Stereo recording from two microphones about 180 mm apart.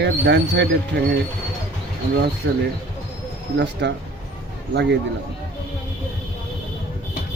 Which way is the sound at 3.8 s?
70° right (ahead or behind).